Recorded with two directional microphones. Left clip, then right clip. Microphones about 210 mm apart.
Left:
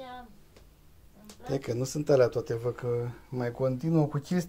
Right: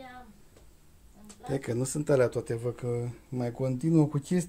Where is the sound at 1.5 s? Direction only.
20° right (ahead or behind).